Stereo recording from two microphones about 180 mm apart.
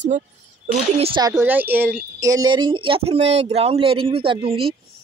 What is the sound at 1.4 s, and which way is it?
Speech, 10° right (ahead or behind).